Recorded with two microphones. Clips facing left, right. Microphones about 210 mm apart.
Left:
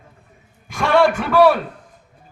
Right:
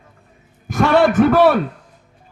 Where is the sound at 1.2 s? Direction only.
45° right (ahead or behind).